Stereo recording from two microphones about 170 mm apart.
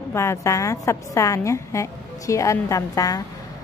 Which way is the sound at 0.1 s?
15° left (ahead or behind).